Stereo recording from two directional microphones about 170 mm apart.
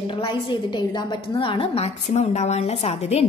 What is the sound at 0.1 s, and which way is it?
A woman's voice, 30° left (ahead or behind).